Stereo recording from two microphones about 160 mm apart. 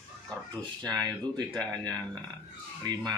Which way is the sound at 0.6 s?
25° right (ahead or behind).